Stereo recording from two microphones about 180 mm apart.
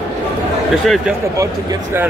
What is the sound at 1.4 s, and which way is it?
Speech, 15° right (ahead or behind).